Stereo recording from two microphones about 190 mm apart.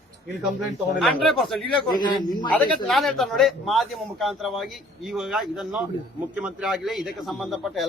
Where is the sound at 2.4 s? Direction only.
5° left (ahead or behind).